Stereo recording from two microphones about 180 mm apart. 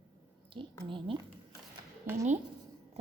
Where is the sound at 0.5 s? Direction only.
30° right (ahead or behind).